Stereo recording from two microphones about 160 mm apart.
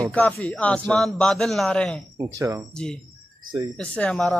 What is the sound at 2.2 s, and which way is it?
Speech, 20° right (ahead or behind).